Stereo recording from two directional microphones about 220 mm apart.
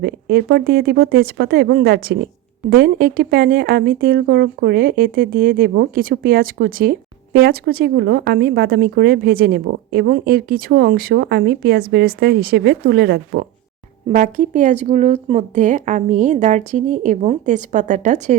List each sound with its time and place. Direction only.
0.0 s speech: 45° right (ahead or behind)